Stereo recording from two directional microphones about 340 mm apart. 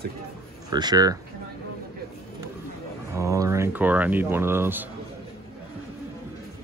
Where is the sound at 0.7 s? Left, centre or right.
Centre.